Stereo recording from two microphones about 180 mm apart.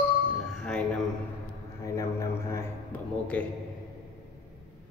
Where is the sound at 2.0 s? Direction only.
15° left (ahead or behind).